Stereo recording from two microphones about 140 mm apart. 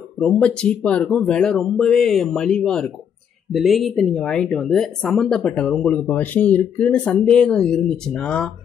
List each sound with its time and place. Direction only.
0.2 s a woman's voice: 5° left (ahead or behind)